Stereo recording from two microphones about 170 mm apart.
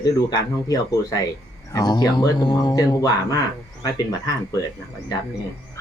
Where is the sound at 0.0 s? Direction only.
20° left (ahead or behind).